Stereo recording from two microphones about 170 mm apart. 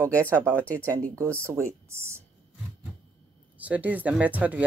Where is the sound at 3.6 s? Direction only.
10° right (ahead or behind).